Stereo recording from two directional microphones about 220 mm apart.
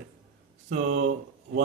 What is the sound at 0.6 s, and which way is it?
Speech, 35° right (ahead or behind).